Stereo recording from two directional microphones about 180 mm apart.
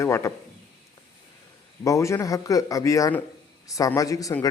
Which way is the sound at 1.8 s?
15° left (ahead or behind).